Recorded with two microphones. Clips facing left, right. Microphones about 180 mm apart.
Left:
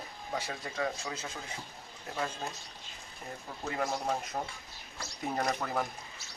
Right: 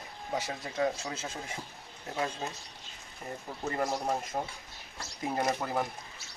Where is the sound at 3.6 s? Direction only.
5° right (ahead or behind).